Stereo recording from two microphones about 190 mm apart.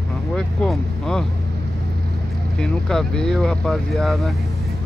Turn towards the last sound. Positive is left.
turn(degrees=0)  # may be behind; listen again after turning